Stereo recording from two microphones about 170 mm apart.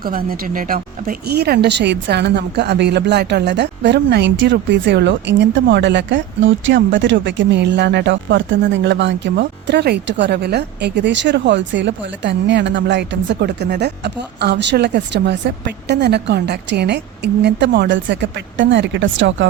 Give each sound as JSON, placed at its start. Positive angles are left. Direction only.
{"t": 0.0, "sound": "speech", "side_deg": -60}